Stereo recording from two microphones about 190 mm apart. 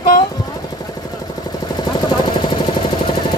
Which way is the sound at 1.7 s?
25° left (ahead or behind).